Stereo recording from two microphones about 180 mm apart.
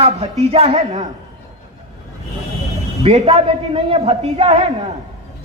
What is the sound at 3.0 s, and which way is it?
A man's voice, 35° right (ahead or behind).